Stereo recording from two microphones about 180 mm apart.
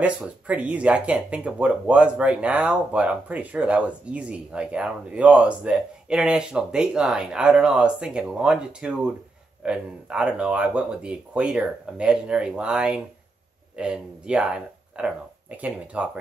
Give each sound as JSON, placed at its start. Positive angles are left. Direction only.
{"t": 0.0, "sound": "speech", "side_deg": -5}